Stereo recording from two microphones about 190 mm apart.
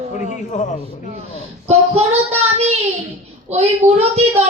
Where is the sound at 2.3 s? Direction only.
35° right (ahead or behind).